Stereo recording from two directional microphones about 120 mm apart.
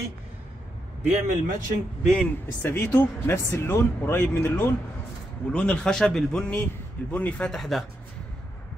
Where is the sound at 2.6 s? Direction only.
20° left (ahead or behind); by 7.9 s centre (ahead or behind).